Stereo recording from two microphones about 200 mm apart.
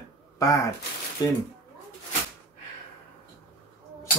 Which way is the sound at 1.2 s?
20° left (ahead or behind).